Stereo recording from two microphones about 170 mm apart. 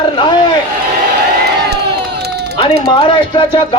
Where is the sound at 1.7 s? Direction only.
75° right (ahead or behind).